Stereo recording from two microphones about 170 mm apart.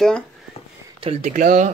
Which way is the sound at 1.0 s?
40° right (ahead or behind).